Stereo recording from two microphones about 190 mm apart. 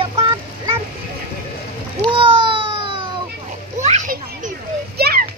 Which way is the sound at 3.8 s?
40° right (ahead or behind).